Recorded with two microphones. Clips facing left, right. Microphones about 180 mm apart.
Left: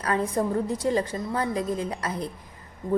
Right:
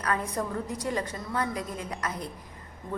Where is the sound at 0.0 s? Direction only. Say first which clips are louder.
Left 5 dB; 30° left (ahead or behind).